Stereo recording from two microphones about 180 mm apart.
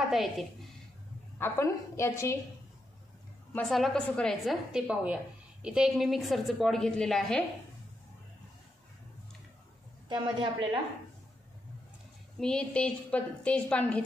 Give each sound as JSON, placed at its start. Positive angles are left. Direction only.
{"t": 0.1, "sound": "a woman's voice", "side_deg": 0}
{"t": 1.4, "sound": "a woman's voice", "side_deg": 15}
{"t": 3.5, "sound": "a woman's voice", "side_deg": 0}
{"t": 10.0, "sound": "speech", "side_deg": -25}
{"t": 12.4, "sound": "a woman's voice", "side_deg": 5}